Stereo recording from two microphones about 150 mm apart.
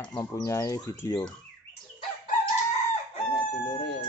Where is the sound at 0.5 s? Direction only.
20° left (ahead or behind).